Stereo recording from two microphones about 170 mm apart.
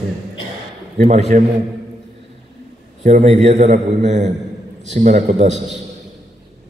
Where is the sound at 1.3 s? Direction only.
55° right (ahead or behind).